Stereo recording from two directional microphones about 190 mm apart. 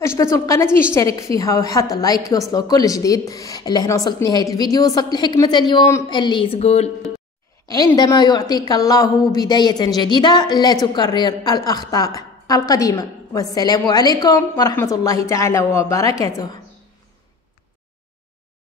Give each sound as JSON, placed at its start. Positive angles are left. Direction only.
{"t": 0.0, "sound": "a woman's voice", "side_deg": 15}
{"t": 7.6, "sound": "a woman's voice", "side_deg": 20}